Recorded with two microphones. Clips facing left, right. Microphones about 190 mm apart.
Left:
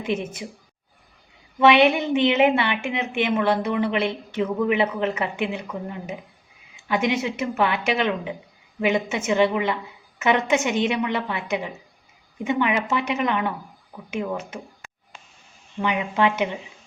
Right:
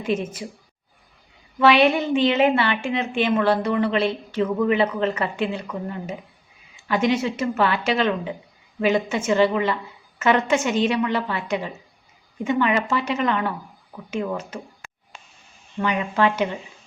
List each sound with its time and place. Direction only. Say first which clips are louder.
0.0 s a woman's voice: right 2 dB; 15° left (ahead or behind)
1.5 s a woman's voice: even; 20° left (ahead or behind)
15.8 s a woman's voice: right 1 dB; 15° left (ahead or behind)